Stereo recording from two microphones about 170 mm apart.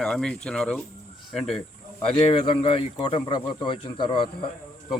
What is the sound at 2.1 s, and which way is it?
Speech, 35° left (ahead or behind).